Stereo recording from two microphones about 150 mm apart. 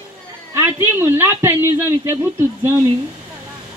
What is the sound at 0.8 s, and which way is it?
Speech, 15° right (ahead or behind).